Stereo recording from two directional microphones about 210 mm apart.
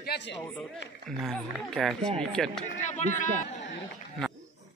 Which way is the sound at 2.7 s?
35° left (ahead or behind).